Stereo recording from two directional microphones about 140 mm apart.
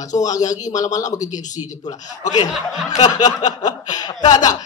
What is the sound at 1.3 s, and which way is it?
Speech, 60° left (ahead or behind).